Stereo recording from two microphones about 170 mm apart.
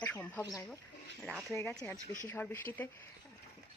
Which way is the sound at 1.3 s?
Centre (ahead or behind).